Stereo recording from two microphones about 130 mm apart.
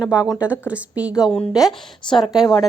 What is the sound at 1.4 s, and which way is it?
Speech, centre (ahead or behind).